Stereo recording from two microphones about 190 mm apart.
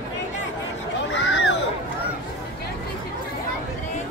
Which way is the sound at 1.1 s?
75° left (ahead or behind).